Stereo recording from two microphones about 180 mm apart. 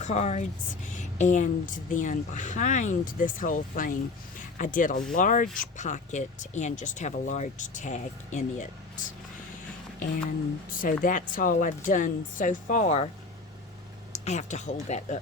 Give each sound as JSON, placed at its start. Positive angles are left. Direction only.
{"t": 0.0, "sound": "a woman's voice", "side_deg": 40}
{"t": 10.7, "sound": "a woman's voice", "side_deg": 50}
{"t": 14.1, "sound": "speech", "side_deg": 40}